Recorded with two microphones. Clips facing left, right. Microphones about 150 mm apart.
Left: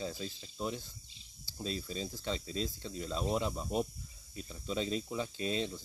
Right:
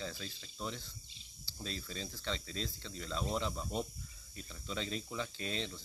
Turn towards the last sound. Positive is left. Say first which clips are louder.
# left 6 dB
turn(degrees=15)  # may be behind; listen again after turning